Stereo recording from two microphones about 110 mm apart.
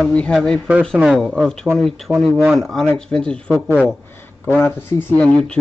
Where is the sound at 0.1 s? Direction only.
10° left (ahead or behind).